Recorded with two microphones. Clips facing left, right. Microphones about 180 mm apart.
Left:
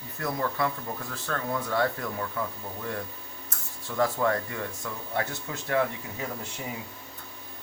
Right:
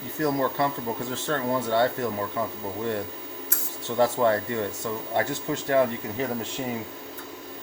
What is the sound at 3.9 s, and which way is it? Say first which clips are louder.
Speech: right 4 dB; 25° right (ahead or behind).